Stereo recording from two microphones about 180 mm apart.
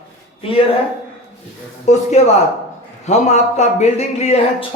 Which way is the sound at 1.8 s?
40° left (ahead or behind).